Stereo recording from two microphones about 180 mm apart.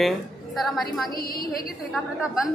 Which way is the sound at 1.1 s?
55° left (ahead or behind).